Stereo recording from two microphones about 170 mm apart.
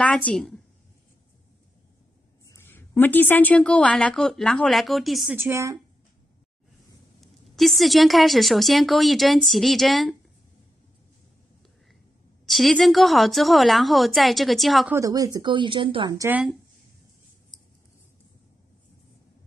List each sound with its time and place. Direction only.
0.0 s a woman's voice: 5° left (ahead or behind)
2.4 s a woman's voice: 15° left (ahead or behind); by 5.4 s centre (ahead or behind)
5.4 s speech: 15° right (ahead or behind)
7.2 s a woman's voice: centre (ahead or behind)
12.4 s a woman's voice: centre (ahead or behind)
14.9 s speech: 20° right (ahead or behind)
16.3 s speech: 10° right (ahead or behind)